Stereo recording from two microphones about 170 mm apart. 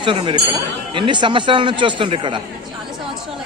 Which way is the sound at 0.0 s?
30° right (ahead or behind).